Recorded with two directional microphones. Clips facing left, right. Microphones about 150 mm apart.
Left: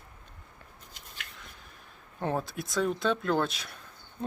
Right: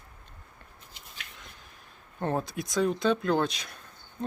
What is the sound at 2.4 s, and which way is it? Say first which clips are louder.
Speech: right 4 dB; centre (ahead or behind).